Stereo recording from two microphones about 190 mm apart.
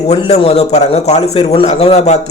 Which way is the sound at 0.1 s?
35° left (ahead or behind).